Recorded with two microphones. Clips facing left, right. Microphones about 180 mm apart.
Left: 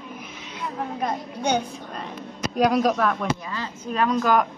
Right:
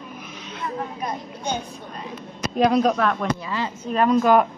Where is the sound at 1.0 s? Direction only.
70° left (ahead or behind).